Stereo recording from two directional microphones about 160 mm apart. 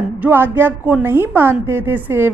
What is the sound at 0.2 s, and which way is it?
A woman's voice, 10° right (ahead or behind).